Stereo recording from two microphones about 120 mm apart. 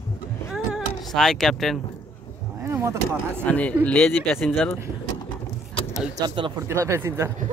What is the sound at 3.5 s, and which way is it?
Speech, 10° left (ahead or behind).